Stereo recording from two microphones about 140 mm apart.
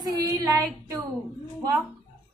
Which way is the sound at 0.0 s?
25° right (ahead or behind).